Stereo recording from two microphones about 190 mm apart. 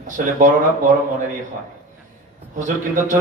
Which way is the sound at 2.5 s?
40° right (ahead or behind).